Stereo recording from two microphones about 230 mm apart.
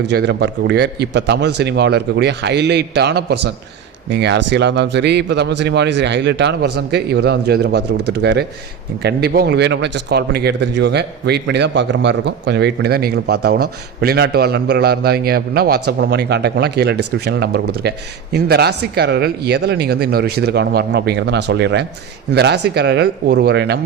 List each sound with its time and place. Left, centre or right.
0.0 s a man's voice: right